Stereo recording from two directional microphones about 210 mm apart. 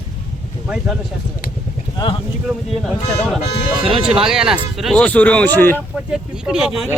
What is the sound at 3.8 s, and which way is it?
Speech, 25° right (ahead or behind).